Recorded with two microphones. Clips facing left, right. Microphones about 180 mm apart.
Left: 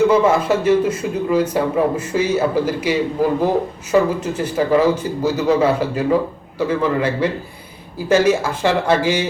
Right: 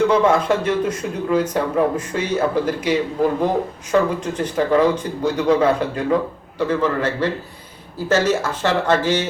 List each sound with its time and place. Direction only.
0.0 s speech: 5° left (ahead or behind)